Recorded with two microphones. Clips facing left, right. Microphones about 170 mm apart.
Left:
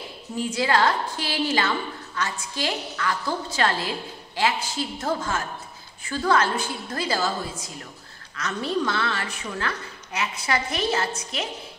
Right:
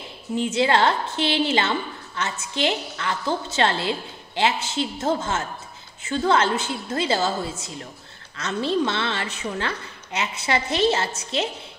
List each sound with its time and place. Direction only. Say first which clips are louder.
0.4 s a woman's voice: right 2 dB; 25° right (ahead or behind)